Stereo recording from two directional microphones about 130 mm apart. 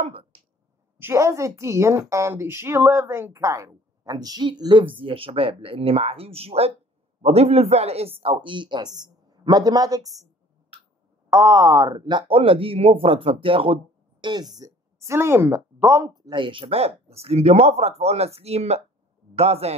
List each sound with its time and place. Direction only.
0.0 s a sound: 45° right (ahead or behind)
0.9 s a woman's voice: 20° right (ahead or behind)
11.2 s a woman's voice: 25° right (ahead or behind); by 13.7 s 45° right (ahead or behind)
14.5 s a woman's voice: 25° right (ahead or behind); by 19.7 s 55° right (ahead or behind)